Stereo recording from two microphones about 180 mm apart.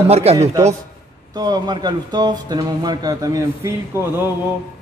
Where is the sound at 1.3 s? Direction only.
20° right (ahead or behind).